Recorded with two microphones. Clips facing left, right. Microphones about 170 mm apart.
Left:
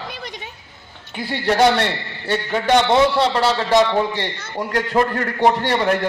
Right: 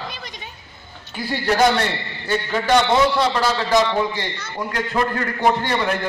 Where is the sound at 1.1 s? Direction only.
25° left (ahead or behind).